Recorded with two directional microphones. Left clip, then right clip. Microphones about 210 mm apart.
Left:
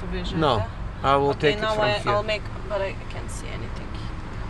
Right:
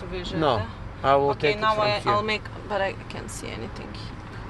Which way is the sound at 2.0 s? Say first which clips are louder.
Even; 50° right (ahead or behind).